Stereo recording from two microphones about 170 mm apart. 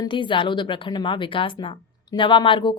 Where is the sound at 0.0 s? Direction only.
30° left (ahead or behind).